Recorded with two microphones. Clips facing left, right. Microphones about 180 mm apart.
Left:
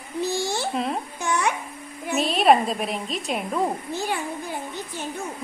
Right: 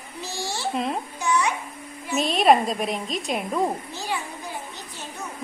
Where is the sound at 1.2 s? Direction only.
60° left (ahead or behind).